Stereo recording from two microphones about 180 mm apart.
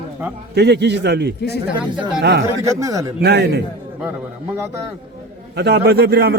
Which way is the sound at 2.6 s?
15° right (ahead or behind).